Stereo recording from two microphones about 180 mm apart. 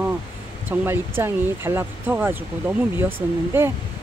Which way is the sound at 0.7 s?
10° right (ahead or behind).